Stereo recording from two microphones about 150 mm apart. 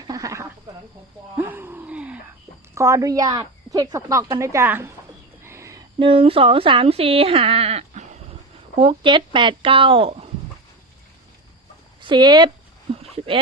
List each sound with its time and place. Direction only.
0.0 s snake: 25° right (ahead or behind)
1.4 s gasp: 15° right (ahead or behind)
2.7 s speech: 20° right (ahead or behind)
5.4 s a sound: 20° right (ahead or behind)
6.0 s speech: 35° right (ahead or behind)
8.8 s speech: 35° right (ahead or behind)
12.0 s speech: 30° right (ahead or behind)
13.0 s a sound: 40° right (ahead or behind)